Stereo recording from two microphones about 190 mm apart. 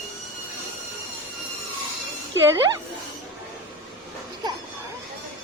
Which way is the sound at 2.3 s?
15° right (ahead or behind).